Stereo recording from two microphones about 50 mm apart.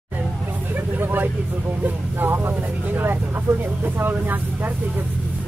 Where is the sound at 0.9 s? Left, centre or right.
Right.